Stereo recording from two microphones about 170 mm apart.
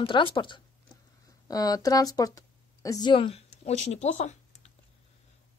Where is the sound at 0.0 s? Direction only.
30° left (ahead or behind).